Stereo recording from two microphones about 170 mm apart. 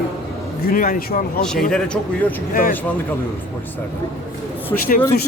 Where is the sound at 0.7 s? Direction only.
55° left (ahead or behind).